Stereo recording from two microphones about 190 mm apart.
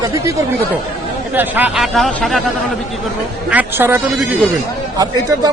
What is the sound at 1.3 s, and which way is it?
Speech, 10° right (ahead or behind).